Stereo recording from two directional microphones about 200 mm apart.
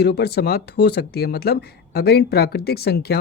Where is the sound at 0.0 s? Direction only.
55° left (ahead or behind).